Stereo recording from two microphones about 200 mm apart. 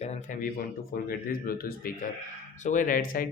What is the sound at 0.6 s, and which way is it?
Speech, 45° left (ahead or behind).